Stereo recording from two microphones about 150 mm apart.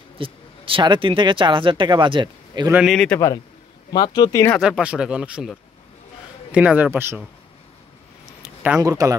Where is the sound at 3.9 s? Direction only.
25° left (ahead or behind).